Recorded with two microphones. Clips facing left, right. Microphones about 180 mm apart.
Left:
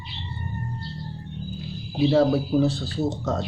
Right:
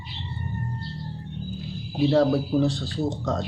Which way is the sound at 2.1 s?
Centre (ahead or behind).